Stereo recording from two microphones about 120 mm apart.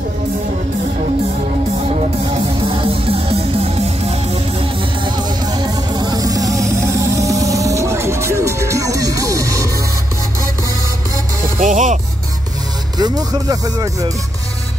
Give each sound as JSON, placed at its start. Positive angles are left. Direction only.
{"t": 2.3, "sound": "music", "side_deg": -45}
{"t": 5.0, "sound": "music", "side_deg": -35}
{"t": 11.5, "sound": "music", "side_deg": -90}
{"t": 12.9, "sound": "speech", "side_deg": -35}